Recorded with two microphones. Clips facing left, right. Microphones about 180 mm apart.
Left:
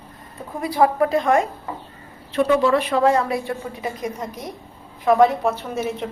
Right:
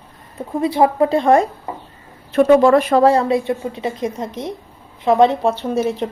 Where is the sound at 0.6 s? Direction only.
25° right (ahead or behind).